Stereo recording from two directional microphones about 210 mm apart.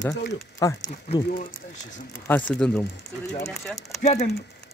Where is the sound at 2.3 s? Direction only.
5° left (ahead or behind).